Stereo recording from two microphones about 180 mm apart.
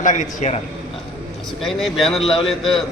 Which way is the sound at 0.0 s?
45° left (ahead or behind).